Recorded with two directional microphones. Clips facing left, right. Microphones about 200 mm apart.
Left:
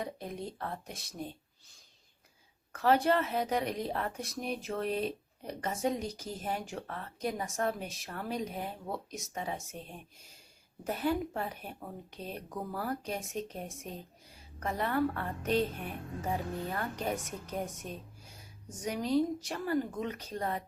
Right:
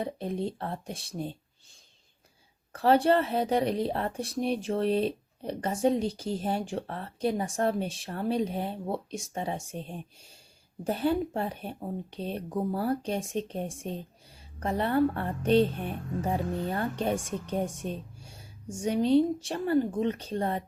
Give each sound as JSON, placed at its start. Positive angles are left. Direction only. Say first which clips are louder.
{"t": 0.0, "sound": "speech", "louder": "right 7 dB", "side_deg": -30}
{"t": 2.7, "sound": "speech", "louder": "right 5 dB", "side_deg": -30}